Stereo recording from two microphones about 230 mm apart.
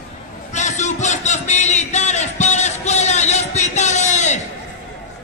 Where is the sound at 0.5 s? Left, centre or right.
Left.